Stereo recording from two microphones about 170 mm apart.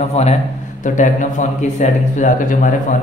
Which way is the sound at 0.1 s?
40° left (ahead or behind).